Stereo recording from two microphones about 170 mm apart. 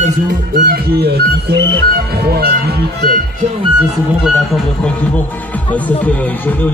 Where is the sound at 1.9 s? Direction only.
65° right (ahead or behind).